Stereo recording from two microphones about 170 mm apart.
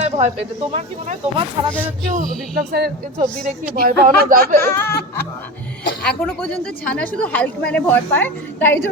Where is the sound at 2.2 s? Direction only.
60° right (ahead or behind).